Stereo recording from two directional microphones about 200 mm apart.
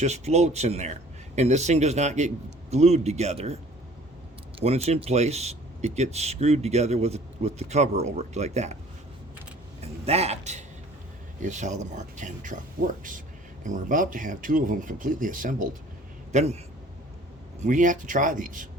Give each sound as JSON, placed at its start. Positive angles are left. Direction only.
{"t": 0.0, "sound": "speech", "side_deg": -35}
{"t": 4.6, "sound": "speech", "side_deg": -30}
{"t": 9.8, "sound": "a man's voice", "side_deg": -30}
{"t": 17.6, "sound": "speech", "side_deg": -40}